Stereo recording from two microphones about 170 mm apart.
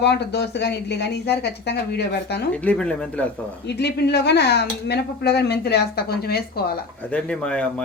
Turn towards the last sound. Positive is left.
turn(degrees=5)  # may be behind; listen again after turning